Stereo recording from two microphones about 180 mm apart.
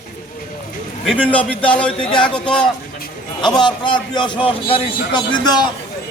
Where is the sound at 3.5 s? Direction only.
25° left (ahead or behind).